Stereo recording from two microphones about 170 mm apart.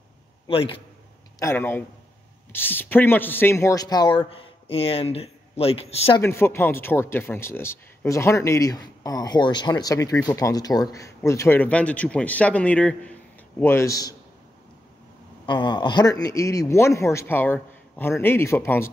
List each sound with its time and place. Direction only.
0.5 s a man's voice: 30° left (ahead or behind)
1.4 s speech: 15° left (ahead or behind); by 6.1 s 35° left (ahead or behind)
6.2 s speech: 15° left (ahead or behind)
15.4 s speech: 25° left (ahead or behind)